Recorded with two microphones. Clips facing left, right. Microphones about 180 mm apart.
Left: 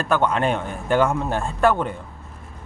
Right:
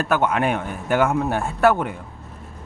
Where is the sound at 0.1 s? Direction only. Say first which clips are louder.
Left 1 dB; 10° right (ahead or behind).